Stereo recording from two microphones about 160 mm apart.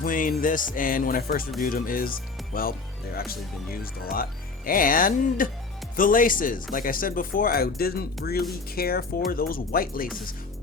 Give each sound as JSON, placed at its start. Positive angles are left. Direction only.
{"t": 0.0, "sound": "speech", "side_deg": 60}